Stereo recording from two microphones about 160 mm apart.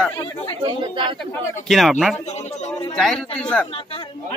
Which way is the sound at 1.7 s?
Centre (ahead or behind).